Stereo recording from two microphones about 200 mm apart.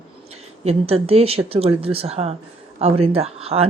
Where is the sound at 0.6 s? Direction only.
30° right (ahead or behind).